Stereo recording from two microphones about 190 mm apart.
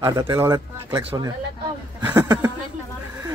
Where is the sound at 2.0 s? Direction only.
20° right (ahead or behind).